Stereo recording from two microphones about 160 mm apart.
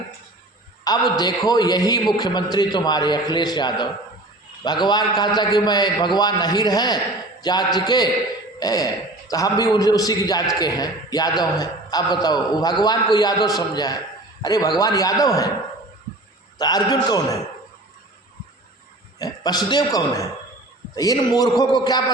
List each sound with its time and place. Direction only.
0.9 s a man's voice: 25° left (ahead or behind)
16.6 s a man's voice: 25° left (ahead or behind)
19.2 s a man's voice: 25° left (ahead or behind)